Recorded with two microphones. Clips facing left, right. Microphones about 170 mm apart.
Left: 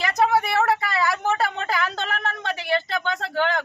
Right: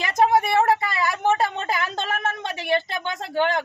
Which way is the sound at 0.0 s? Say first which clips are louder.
Right 1 dB; 20° right (ahead or behind).